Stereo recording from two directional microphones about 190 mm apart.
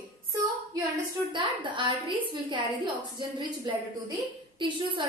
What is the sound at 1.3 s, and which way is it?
A woman's voice, 25° right (ahead or behind).